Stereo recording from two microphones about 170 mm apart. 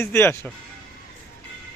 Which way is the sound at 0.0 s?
15° left (ahead or behind).